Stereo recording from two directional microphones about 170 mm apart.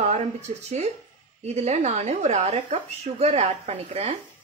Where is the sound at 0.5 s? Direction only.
40° right (ahead or behind).